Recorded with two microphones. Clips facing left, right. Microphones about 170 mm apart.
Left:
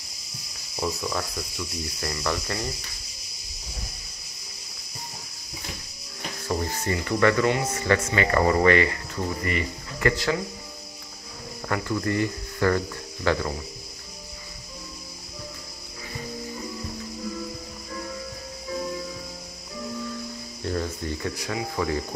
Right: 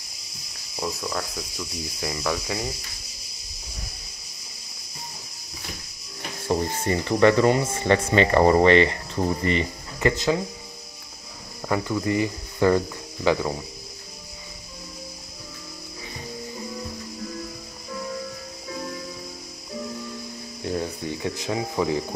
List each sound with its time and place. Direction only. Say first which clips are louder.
0.7 s speech: left 1 dB; centre (ahead or behind)
6.4 s speech: right 4 dB; 25° right (ahead or behind)
11.6 s speech: right 2 dB; 15° right (ahead or behind)
20.6 s speech: right 1 dB; 15° right (ahead or behind)